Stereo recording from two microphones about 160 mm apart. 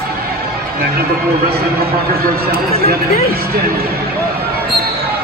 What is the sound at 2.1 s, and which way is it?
Speech, 70° right (ahead or behind).